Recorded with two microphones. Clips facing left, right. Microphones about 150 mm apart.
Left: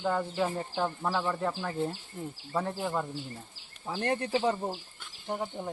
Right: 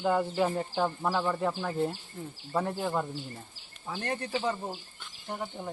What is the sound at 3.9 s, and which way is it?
Speech, 30° left (ahead or behind).